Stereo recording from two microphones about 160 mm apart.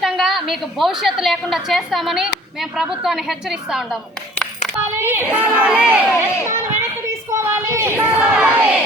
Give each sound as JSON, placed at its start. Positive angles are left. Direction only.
{"t": 0.0, "sound": "a woman's voice", "side_deg": 0}
{"t": 4.9, "sound": "speech", "side_deg": -15}
{"t": 7.1, "sound": "a sound", "side_deg": -20}